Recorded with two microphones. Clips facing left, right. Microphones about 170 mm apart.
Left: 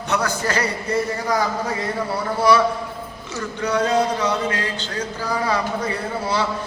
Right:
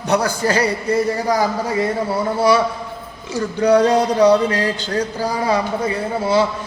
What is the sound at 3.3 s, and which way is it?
Speech, 35° right (ahead or behind).